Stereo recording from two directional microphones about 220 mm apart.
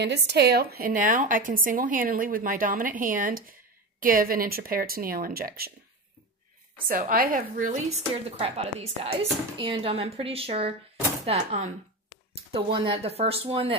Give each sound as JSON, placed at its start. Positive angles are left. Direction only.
{"t": 0.0, "sound": "a woman's voice", "side_deg": -50}
{"t": 6.9, "sound": "a woman's voice", "side_deg": -40}